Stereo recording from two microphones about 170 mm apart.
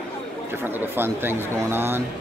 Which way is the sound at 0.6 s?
10° right (ahead or behind).